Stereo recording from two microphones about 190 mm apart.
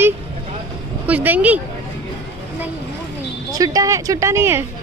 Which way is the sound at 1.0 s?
10° right (ahead or behind).